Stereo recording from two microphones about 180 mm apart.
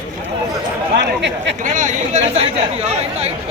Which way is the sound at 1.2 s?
75° right (ahead or behind).